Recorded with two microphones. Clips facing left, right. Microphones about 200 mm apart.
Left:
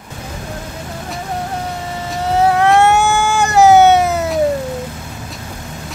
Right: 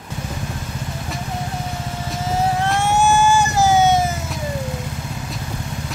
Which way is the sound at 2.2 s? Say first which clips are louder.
Left 7 dB; 65° left (ahead or behind).